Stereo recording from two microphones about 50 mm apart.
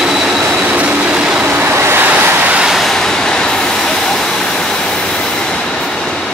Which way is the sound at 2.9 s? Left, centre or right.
Centre.